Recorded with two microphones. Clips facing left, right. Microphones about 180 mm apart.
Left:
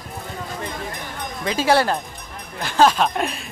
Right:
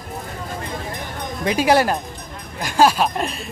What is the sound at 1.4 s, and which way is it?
Speech, 15° right (ahead or behind).